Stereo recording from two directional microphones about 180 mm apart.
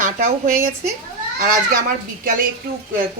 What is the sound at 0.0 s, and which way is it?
Speech, 45° right (ahead or behind).